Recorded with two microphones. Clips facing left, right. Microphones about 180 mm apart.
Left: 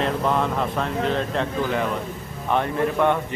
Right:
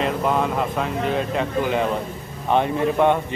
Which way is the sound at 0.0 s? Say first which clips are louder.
Right 1 dB; 10° right (ahead or behind).